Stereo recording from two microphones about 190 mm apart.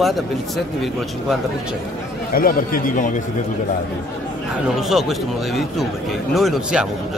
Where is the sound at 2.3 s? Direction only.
50° left (ahead or behind).